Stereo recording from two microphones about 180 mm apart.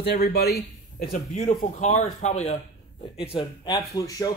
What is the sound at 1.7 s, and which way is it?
Speech, 40° left (ahead or behind).